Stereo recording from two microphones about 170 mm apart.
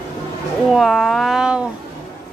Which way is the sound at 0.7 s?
Centre (ahead or behind).